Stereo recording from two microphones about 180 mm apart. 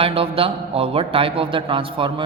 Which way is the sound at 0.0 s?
30° right (ahead or behind).